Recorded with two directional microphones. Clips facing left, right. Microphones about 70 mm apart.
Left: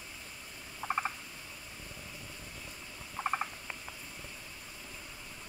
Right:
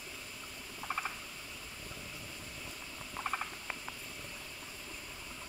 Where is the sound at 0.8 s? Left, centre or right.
Centre.